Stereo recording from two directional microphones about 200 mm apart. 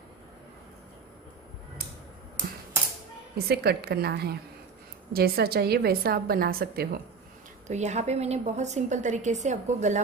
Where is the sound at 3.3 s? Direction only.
50° right (ahead or behind).